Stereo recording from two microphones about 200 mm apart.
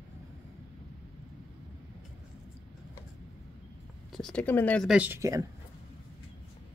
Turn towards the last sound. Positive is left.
turn(degrees=-15)  # may be behind; listen again after turning